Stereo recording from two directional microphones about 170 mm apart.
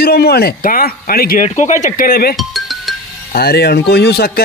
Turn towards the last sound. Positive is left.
turn(degrees=70)  # may be behind; listen again after turning